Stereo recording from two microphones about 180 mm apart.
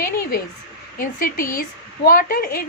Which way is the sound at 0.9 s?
55° left (ahead or behind).